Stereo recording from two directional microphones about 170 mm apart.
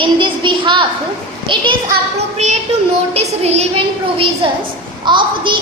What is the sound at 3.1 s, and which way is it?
Child singing, 40° right (ahead or behind).